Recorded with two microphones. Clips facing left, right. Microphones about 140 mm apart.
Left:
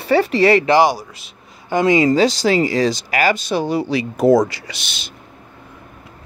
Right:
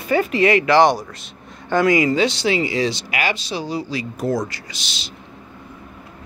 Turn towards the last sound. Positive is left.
turn(degrees=55)  # may be behind; listen again after turning